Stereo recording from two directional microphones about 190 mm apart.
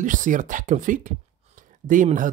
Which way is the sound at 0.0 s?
40° right (ahead or behind).